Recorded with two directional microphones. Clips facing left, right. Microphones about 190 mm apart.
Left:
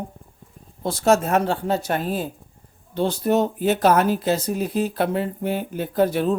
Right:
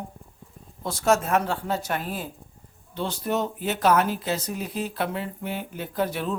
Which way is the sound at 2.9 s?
40° left (ahead or behind).